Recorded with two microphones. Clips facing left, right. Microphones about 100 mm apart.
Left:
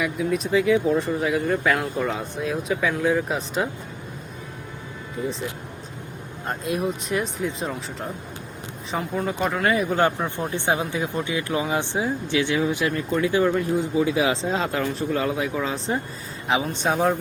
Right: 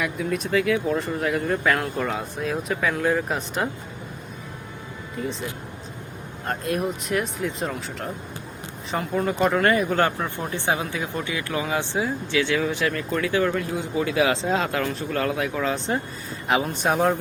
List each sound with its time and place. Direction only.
0.0 s speech: 10° left (ahead or behind)
6.5 s speech: 5° left (ahead or behind)
9.9 s speech: 15° left (ahead or behind)
14.4 s speech: centre (ahead or behind)
15.1 s speech: 15° left (ahead or behind)